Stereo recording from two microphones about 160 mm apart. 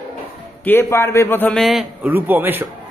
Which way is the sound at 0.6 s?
15° left (ahead or behind).